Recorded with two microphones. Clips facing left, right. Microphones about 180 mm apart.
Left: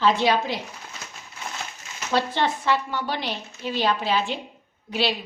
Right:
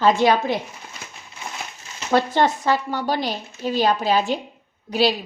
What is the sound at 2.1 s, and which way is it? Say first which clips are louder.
A woman's voice: right 5 dB; 45° right (ahead or behind).